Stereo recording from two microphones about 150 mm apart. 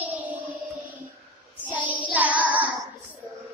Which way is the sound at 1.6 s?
10° right (ahead or behind).